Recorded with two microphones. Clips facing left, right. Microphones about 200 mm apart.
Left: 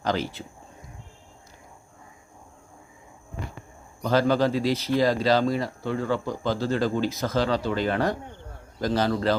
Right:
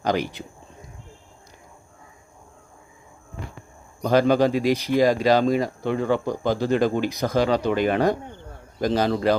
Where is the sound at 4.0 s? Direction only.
15° right (ahead or behind).